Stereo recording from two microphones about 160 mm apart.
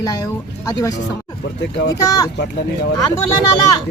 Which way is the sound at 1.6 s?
90° left.